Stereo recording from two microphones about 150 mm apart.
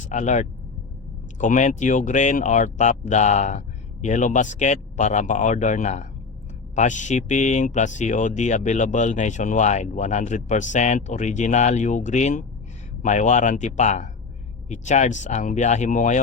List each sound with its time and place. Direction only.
0.0 s speech: 55° left (ahead or behind)